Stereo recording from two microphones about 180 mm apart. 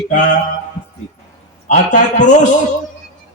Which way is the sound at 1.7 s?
45° left (ahead or behind).